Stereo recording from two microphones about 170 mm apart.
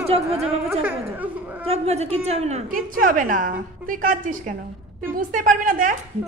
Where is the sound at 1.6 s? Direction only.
40° right (ahead or behind).